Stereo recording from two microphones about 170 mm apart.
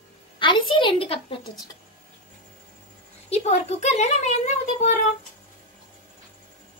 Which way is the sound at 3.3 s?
40° left (ahead or behind).